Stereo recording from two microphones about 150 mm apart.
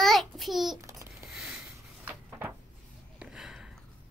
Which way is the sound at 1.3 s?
5° right (ahead or behind).